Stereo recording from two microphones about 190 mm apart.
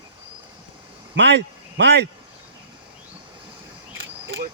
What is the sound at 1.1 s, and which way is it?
Speech, 70° right (ahead or behind).